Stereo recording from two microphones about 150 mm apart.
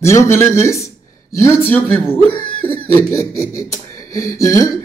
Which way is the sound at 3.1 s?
20° left (ahead or behind).